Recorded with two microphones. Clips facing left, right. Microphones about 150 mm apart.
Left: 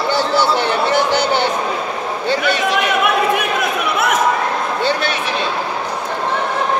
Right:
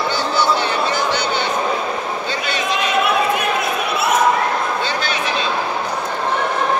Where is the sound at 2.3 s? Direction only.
65° left (ahead or behind).